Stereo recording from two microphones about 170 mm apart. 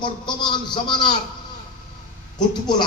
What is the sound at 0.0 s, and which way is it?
Music, 25° left (ahead or behind).